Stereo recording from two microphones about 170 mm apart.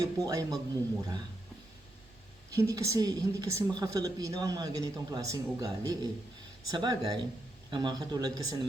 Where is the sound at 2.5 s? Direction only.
20° right (ahead or behind).